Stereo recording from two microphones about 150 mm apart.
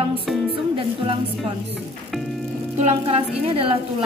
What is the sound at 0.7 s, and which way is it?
Speech, 35° right (ahead or behind).